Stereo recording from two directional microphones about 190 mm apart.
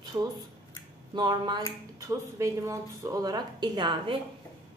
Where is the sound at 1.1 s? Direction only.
25° right (ahead or behind).